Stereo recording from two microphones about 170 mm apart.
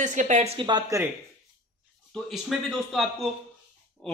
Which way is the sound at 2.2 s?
Centre (ahead or behind).